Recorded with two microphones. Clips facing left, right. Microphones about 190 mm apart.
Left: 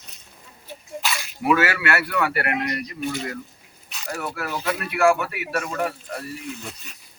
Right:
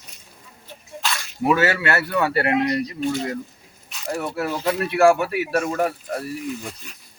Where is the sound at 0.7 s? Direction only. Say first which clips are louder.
Even; 10° left (ahead or behind).